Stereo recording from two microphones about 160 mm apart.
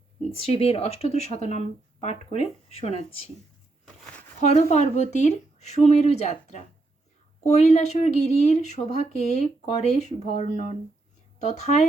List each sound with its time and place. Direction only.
0.3 s speech: 40° left (ahead or behind)
4.4 s speech: 45° left (ahead or behind)